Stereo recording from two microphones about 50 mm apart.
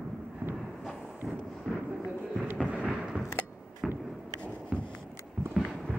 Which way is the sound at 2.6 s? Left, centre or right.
Right.